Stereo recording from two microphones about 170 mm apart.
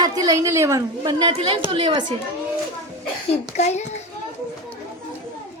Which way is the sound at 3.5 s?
45° left (ahead or behind).